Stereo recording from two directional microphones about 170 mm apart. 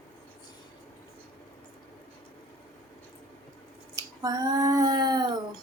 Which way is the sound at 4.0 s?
20° right (ahead or behind).